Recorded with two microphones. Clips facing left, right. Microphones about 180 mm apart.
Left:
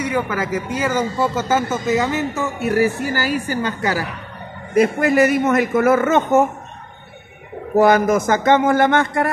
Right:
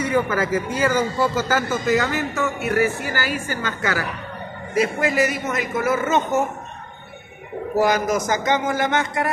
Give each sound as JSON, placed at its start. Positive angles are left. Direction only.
{"t": 0.0, "sound": "speech", "side_deg": 10}
{"t": 4.7, "sound": "a woman's voice", "side_deg": 60}
{"t": 7.7, "sound": "a woman's voice", "side_deg": 55}